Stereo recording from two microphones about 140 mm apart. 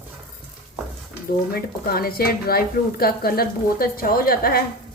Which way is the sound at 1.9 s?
90° left.